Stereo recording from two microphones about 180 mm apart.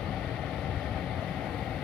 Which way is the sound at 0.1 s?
5° left (ahead or behind).